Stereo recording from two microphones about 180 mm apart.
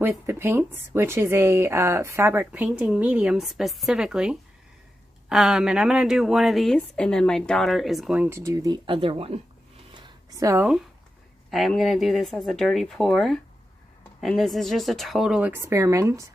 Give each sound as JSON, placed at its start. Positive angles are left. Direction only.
{"t": 0.0, "sound": "a woman's voice", "side_deg": -10}
{"t": 10.3, "sound": "a woman's voice", "side_deg": -15}
{"t": 11.5, "sound": "a woman's voice", "side_deg": 0}